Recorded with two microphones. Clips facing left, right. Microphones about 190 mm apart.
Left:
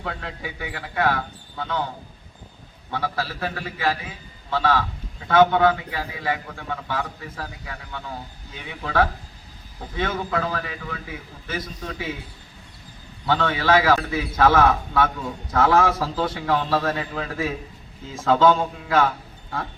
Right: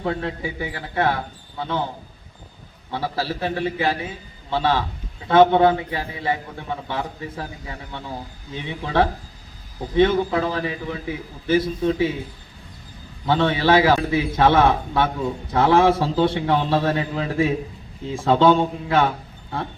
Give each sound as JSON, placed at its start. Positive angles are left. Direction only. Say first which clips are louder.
{"t": 0.0, "sound": "a man's voice", "louder": "right 7 dB", "side_deg": -30}
{"t": 2.9, "sound": "a man's voice", "louder": "right 2 dB", "side_deg": -30}
{"t": 13.2, "sound": "a man's voice", "louder": "right 3 dB", "side_deg": -25}